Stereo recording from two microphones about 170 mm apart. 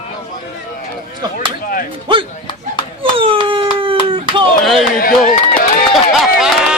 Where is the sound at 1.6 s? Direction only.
55° left (ahead or behind).